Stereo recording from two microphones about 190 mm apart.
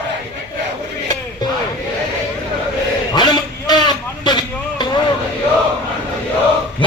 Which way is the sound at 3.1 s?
20° left (ahead or behind).